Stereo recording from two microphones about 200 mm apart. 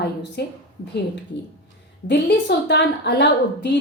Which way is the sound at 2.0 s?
60° left (ahead or behind).